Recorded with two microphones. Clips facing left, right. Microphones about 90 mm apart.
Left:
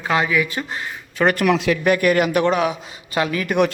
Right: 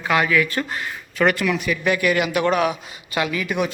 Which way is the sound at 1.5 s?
90° left.